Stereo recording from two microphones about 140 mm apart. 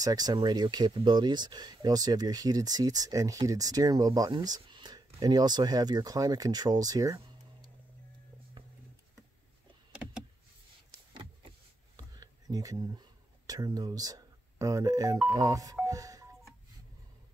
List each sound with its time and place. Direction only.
0.0 s speech: 25° right (ahead or behind)
12.0 s a sound: 25° right (ahead or behind)
13.5 s speech: 25° right (ahead or behind)